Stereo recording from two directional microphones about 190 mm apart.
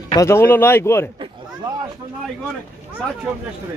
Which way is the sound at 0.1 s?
15° left (ahead or behind).